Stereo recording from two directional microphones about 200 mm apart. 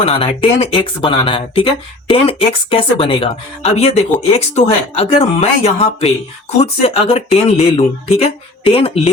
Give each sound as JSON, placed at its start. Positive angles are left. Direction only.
{"t": 0.0, "sound": "speech", "side_deg": 30}